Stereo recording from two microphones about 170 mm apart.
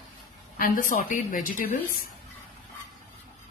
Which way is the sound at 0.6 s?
55° left (ahead or behind).